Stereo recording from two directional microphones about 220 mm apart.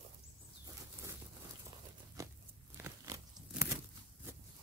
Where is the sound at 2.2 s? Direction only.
15° right (ahead or behind).